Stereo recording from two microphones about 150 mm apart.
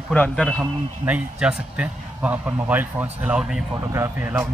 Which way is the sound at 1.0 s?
10° right (ahead or behind).